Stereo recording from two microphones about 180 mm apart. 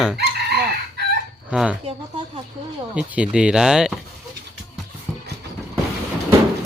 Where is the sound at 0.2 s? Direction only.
65° right (ahead or behind).